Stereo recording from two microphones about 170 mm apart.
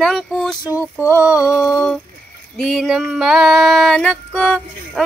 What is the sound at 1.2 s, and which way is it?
Female singing, 5° right (ahead or behind).